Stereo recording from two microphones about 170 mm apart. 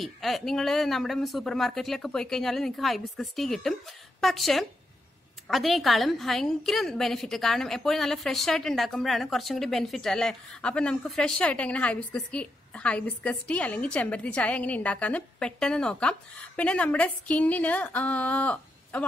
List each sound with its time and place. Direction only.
0.0 s a woman's voice: centre (ahead or behind)